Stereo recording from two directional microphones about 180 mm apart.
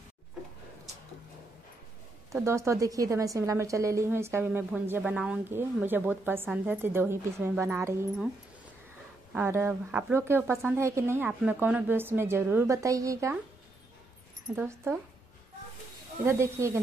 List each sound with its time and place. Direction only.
2.3 s a woman's voice: 15° right (ahead or behind)
9.3 s a woman's voice: 15° right (ahead or behind)
14.5 s a woman's voice: 10° right (ahead or behind)
16.3 s a woman's voice: 15° right (ahead or behind)